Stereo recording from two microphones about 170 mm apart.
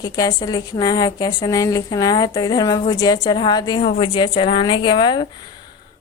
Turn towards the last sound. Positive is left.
turn(degrees=25)  # may be behind; listen again after turning